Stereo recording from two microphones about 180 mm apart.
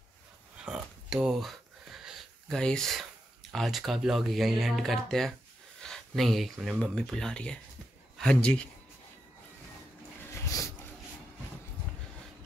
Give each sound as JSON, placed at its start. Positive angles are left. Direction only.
{"t": 0.7, "sound": "a sound", "side_deg": -5}
{"t": 3.5, "sound": "speech", "side_deg": 0}
{"t": 10.3, "sound": "dog", "side_deg": 15}